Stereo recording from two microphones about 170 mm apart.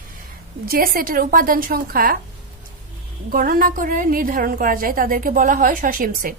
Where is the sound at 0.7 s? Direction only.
60° right (ahead or behind).